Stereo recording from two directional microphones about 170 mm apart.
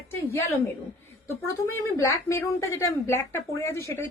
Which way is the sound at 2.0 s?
15° left (ahead or behind).